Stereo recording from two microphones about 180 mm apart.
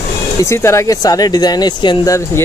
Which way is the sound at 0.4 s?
15° left (ahead or behind).